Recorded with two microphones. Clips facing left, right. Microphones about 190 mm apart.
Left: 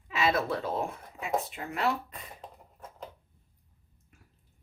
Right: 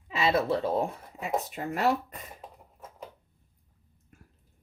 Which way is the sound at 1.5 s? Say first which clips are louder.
Right 4 dB; 40° right (ahead or behind).